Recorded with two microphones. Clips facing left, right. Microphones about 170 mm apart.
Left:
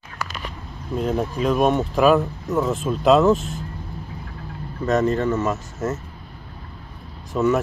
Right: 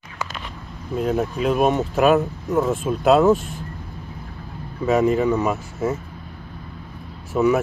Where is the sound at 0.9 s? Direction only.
5° right (ahead or behind).